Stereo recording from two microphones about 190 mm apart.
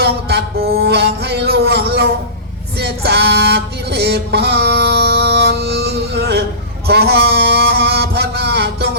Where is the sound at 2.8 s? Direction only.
60° right (ahead or behind).